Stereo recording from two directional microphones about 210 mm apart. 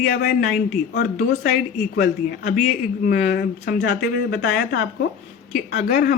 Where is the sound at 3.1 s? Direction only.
45° left (ahead or behind).